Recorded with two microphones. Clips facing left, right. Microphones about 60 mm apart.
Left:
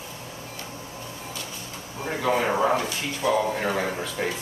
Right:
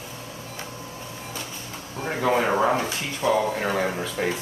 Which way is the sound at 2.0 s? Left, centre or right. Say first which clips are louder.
Right 2 dB; centre.